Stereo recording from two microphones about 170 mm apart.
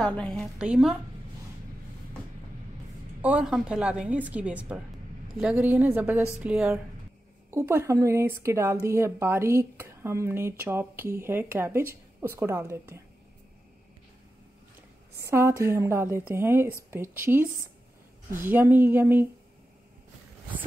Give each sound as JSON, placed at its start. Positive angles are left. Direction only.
{"t": 0.0, "sound": "a woman's voice", "side_deg": 5}
{"t": 3.2, "sound": "speech", "side_deg": -5}
{"t": 15.2, "sound": "speech", "side_deg": -15}